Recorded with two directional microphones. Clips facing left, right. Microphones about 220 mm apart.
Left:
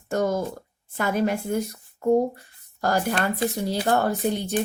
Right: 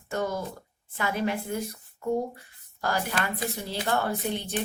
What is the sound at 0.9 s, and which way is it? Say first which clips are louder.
A woman's voice: left 5 dB; 45° left (ahead or behind).